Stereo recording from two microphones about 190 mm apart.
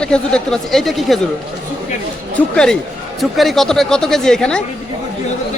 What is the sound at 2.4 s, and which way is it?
Speech, 10° left (ahead or behind).